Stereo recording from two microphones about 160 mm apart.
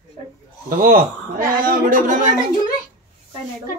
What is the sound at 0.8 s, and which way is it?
A man's voice, 60° right (ahead or behind).